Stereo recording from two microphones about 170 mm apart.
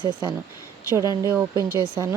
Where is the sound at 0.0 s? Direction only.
25° right (ahead or behind).